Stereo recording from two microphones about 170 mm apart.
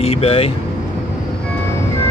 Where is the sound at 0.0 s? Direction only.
35° left (ahead or behind).